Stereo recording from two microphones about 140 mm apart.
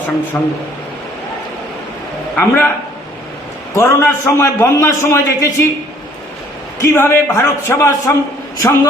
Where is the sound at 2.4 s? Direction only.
15° left (ahead or behind).